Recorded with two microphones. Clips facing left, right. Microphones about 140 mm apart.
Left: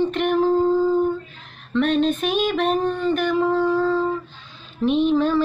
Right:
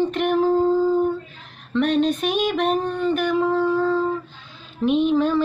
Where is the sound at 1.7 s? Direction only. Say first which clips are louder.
Even; 10° right (ahead or behind).